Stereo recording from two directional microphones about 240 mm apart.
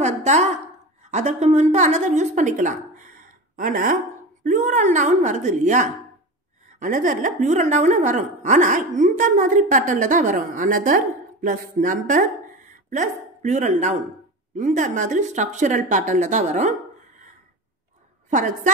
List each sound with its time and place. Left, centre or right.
0.0 s a sound: right
1.1 s a woman's voice: right
18.3 s a woman's voice: right